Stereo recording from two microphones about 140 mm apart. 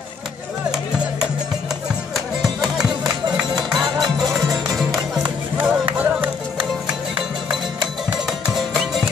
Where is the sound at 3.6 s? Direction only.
Centre (ahead or behind).